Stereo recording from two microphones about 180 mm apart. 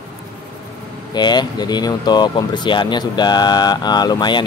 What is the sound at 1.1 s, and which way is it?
Speech, 25° left (ahead or behind).